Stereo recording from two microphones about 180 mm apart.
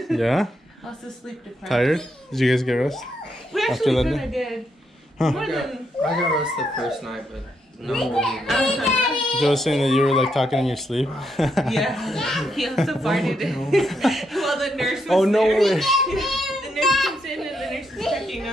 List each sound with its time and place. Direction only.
0.0 s speech: centre (ahead or behind)
1.7 s a child's voice: centre (ahead or behind)